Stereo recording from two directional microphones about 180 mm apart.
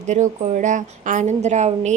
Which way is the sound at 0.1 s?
40° right (ahead or behind).